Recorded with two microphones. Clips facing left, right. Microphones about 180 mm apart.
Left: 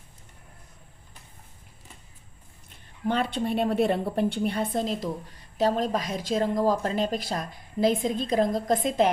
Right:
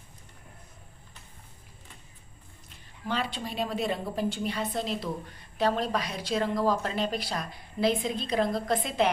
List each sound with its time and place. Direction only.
3.1 s a woman's voice: 55° left (ahead or behind)